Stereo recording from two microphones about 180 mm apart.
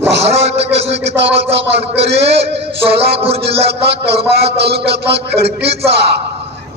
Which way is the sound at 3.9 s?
65° right (ahead or behind).